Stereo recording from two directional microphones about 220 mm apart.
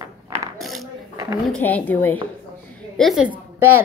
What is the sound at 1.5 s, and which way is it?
A woman's voice, 5° left (ahead or behind).